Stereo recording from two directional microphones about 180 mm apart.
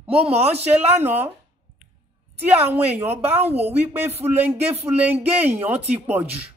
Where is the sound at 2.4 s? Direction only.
10° right (ahead or behind).